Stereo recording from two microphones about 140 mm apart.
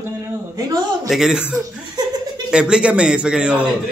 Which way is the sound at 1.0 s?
Centre (ahead or behind).